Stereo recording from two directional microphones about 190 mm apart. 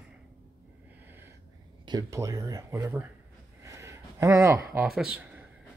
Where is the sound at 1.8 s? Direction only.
20° right (ahead or behind).